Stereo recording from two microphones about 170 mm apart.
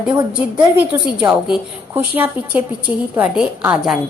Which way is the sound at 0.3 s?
10° right (ahead or behind).